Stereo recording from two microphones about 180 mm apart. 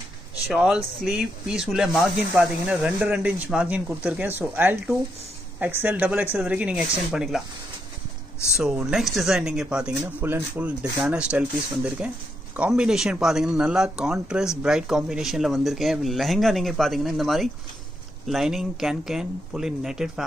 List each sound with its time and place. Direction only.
0.5 s speech: 5° right (ahead or behind)
8.5 s speech: 5° right (ahead or behind)